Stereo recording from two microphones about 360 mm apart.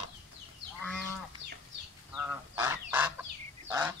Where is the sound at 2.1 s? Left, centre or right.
Centre.